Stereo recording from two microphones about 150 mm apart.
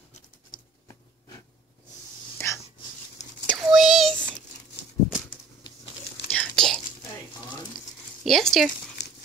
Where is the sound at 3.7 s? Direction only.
Centre (ahead or behind).